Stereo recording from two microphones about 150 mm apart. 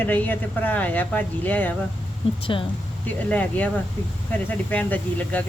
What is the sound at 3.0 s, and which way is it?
Speech, 10° left (ahead or behind).